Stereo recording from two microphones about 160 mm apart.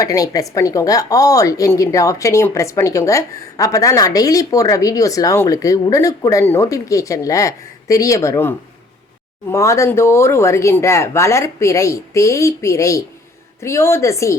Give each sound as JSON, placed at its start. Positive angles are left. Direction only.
{"t": 0.0, "sound": "a woman's voice", "side_deg": 20}